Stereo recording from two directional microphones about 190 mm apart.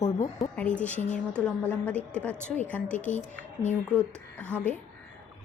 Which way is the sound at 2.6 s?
5° left (ahead or behind).